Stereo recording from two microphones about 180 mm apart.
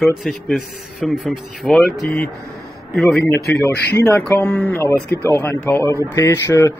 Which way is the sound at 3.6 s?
15° left (ahead or behind).